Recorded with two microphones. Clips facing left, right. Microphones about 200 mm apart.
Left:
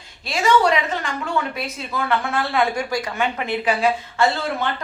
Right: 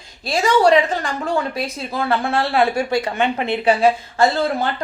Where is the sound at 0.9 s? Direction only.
35° right (ahead or behind).